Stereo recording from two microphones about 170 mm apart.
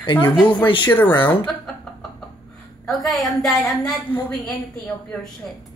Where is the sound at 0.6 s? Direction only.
30° left (ahead or behind).